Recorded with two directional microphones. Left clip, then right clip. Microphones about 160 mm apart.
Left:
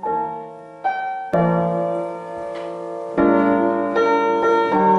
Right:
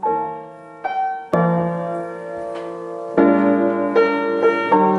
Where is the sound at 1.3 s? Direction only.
5° right (ahead or behind); by 4.0 s 20° right (ahead or behind).